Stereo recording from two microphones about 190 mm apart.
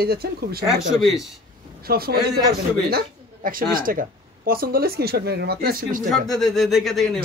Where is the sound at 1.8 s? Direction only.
55° right (ahead or behind).